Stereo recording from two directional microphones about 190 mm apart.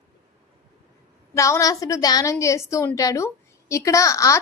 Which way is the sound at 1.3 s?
15° left (ahead or behind).